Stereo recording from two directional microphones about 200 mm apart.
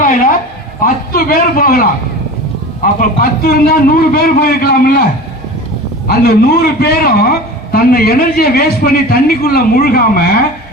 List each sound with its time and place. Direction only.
0.0 s a sound: 40° left (ahead or behind)
0.9 s a man's voice: 45° left (ahead or behind)
6.1 s a man's voice: 50° left (ahead or behind)